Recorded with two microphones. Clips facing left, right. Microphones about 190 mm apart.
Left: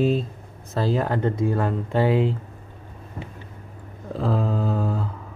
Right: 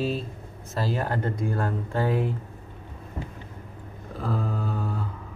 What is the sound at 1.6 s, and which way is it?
Speech, 85° left.